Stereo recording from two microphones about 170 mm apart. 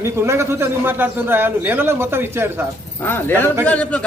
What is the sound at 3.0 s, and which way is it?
Speech, 10° left (ahead or behind).